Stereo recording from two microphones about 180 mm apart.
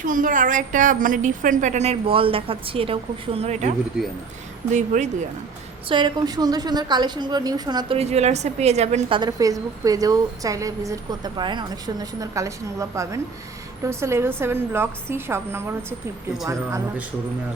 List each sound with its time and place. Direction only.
0.0 s a woman's voice: 45° right (ahead or behind)
5.9 s a woman's voice: 25° right (ahead or behind)